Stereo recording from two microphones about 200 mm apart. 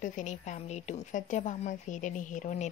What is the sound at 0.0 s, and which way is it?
A woman's voice, 35° left (ahead or behind).